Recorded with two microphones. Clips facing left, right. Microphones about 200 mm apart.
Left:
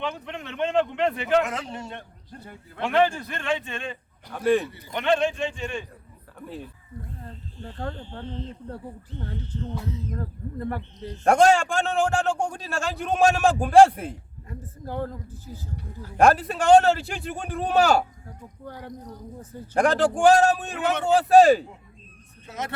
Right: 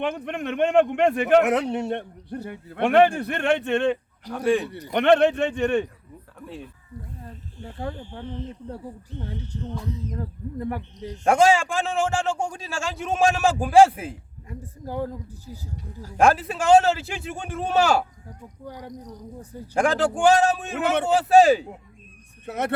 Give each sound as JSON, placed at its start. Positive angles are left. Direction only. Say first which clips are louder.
{"t": 0.0, "sound": "a man's voice", "louder": "right 5 dB", "side_deg": -55}
{"t": 4.3, "sound": "a man's voice", "louder": "even", "side_deg": 0}
{"t": 4.9, "sound": "a man's voice", "louder": "right 6 dB", "side_deg": -65}
{"t": 6.4, "sound": "a man's voice", "louder": "left 1 dB", "side_deg": 0}
{"t": 7.3, "sound": "speech", "louder": "even", "side_deg": -10}
{"t": 11.3, "sound": "a man's voice", "louder": "even", "side_deg": 0}
{"t": 14.5, "sound": "speech", "louder": "right 1 dB", "side_deg": -10}
{"t": 16.1, "sound": "a man's voice", "louder": "left 1 dB", "side_deg": 0}
{"t": 18.6, "sound": "speech", "louder": "right 1 dB", "side_deg": -15}
{"t": 19.7, "sound": "a man's voice", "louder": "left 1 dB", "side_deg": 0}
{"t": 22.4, "sound": "a man's voice", "louder": "right 6 dB", "side_deg": -60}